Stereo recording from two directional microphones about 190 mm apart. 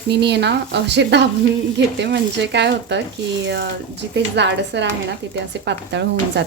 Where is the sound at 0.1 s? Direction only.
60° right (ahead or behind).